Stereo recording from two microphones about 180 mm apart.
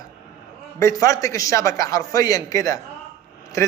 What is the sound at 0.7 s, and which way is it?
A man's voice, 15° left (ahead or behind).